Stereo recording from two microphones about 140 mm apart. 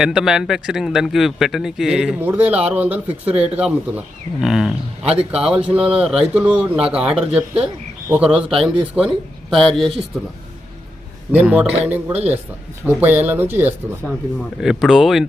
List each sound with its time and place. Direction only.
0.0 s a man's voice: 5° right (ahead or behind)
11.3 s a man's voice: 10° right (ahead or behind)
14.6 s speech: 5° right (ahead or behind)